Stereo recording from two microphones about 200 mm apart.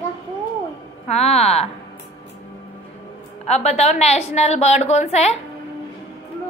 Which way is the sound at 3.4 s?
30° left (ahead or behind).